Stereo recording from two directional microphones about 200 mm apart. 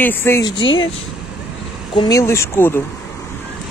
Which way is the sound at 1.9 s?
20° left (ahead or behind).